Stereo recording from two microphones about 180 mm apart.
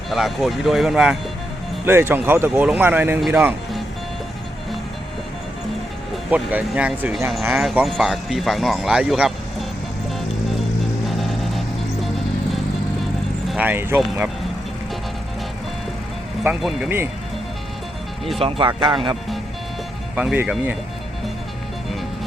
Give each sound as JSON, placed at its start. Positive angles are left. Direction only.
{"t": 0.1, "sound": "speech", "side_deg": 0}
{"t": 6.3, "sound": "speech", "side_deg": -10}
{"t": 13.5, "sound": "speech", "side_deg": -10}
{"t": 16.4, "sound": "speech", "side_deg": -5}
{"t": 18.3, "sound": "speech", "side_deg": -30}
{"t": 20.1, "sound": "speech", "side_deg": -10}